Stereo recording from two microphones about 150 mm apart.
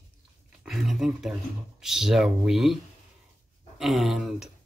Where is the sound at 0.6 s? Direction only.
Centre (ahead or behind).